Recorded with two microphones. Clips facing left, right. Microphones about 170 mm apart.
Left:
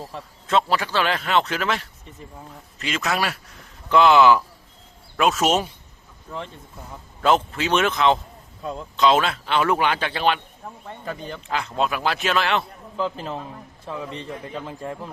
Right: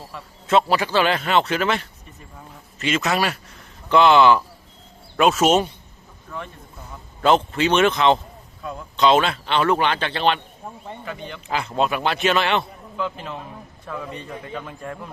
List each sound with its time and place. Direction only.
0.4 s speech: 5° right (ahead or behind)
7.2 s speech: centre (ahead or behind)
8.6 s a man's voice: 25° left (ahead or behind)
9.0 s speech: centre (ahead or behind)
11.0 s a man's voice: 40° left (ahead or behind)
11.4 s speech: 5° right (ahead or behind)
13.0 s a man's voice: 35° left (ahead or behind)
13.8 s a man's voice: 25° left (ahead or behind)